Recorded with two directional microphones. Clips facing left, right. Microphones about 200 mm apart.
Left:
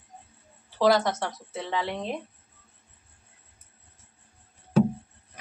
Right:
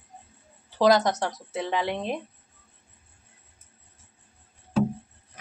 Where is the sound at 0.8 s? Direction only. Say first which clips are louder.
Right 2 dB; 15° right (ahead or behind).